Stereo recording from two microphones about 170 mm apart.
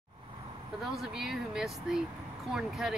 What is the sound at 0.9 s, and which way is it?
Speech, 5° right (ahead or behind).